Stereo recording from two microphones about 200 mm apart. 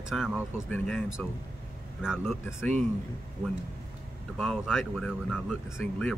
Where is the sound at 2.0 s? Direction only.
5° right (ahead or behind).